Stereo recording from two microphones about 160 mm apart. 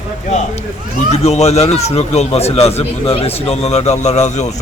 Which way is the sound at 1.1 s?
45° left (ahead or behind).